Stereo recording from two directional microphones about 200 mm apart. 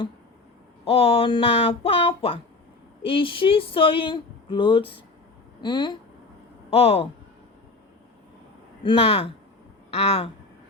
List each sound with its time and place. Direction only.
0.9 s speech: 30° left (ahead or behind)
8.8 s speech: 25° left (ahead or behind)